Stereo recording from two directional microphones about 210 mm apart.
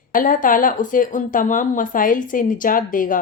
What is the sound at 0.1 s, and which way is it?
A woman's voice, 40° left (ahead or behind).